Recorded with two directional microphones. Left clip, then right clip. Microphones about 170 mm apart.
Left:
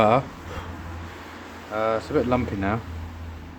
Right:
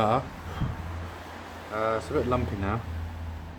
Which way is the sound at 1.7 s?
35° left (ahead or behind).